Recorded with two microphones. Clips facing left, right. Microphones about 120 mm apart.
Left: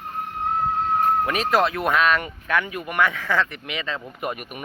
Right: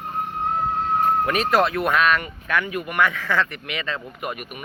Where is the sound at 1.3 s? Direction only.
20° left (ahead or behind).